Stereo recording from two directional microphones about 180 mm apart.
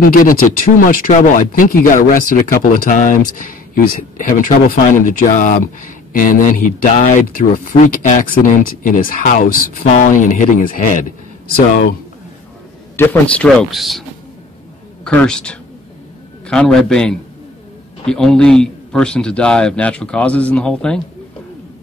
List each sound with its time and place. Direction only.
0.0 s speech: 50° left (ahead or behind)
12.9 s a man's voice: 10° left (ahead or behind)
15.0 s a man's voice: 5° left (ahead or behind)